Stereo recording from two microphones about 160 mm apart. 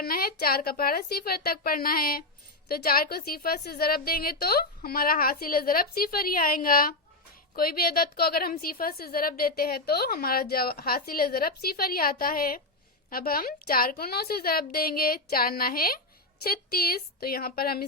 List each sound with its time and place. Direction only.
0.0 s a woman's voice: 75° left (ahead or behind)